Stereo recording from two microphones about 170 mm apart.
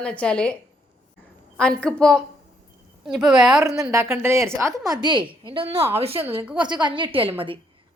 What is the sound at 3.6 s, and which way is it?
A woman's voice, 20° right (ahead or behind).